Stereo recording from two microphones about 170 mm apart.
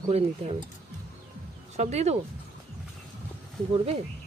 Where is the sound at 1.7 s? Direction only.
40° right (ahead or behind).